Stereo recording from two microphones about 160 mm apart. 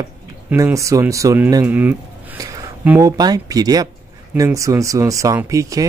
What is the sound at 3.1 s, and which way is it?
Speech, 25° right (ahead or behind).